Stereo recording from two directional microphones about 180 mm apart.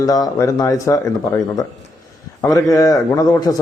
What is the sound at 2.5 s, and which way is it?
A man's voice, 20° left (ahead or behind).